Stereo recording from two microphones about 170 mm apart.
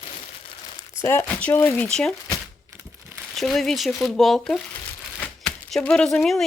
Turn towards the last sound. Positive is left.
turn(degrees=0)  # may be behind; listen again after turning